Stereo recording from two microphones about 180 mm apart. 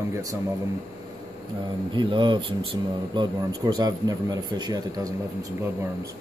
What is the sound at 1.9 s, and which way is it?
Speech, 25° right (ahead or behind).